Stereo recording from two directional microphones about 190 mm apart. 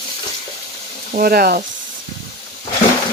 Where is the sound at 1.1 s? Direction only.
50° right (ahead or behind).